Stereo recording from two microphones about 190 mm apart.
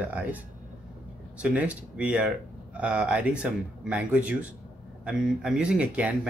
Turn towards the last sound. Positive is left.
turn(degrees=-5)  # may be behind; listen again after turning